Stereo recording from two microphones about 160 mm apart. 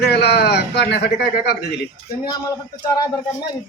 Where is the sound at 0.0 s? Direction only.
90° left.